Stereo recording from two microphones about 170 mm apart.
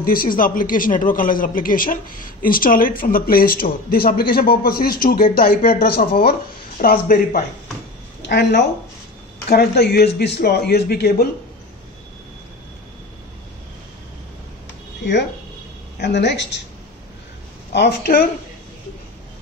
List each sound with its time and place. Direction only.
0.0 s a man's voice: 60° left (ahead or behind)
8.3 s speech: 80° left
9.5 s speech: 65° left (ahead or behind)
16.0 s a woman's voice: 90° left
17.7 s speech: 65° left (ahead or behind)